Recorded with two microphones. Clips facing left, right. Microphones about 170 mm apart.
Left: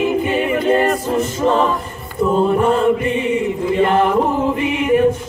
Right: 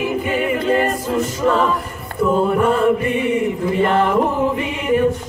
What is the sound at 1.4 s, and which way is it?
Chant, 25° left (ahead or behind).